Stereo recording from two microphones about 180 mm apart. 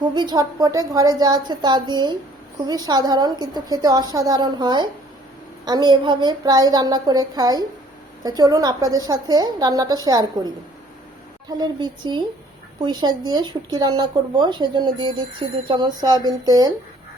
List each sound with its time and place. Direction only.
0.0 s speech: 25° right (ahead or behind)